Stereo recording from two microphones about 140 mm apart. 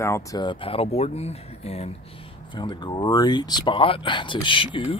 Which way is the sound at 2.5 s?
35° left (ahead or behind).